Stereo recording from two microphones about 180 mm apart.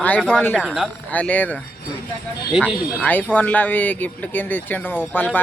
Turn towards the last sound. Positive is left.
turn(degrees=10)  # may be behind; listen again after turning